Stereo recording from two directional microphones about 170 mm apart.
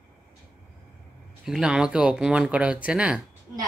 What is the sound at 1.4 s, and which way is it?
A woman's voice, 5° right (ahead or behind).